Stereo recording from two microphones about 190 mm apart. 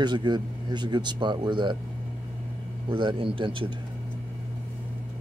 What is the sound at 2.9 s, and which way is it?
Speech, 25° right (ahead or behind).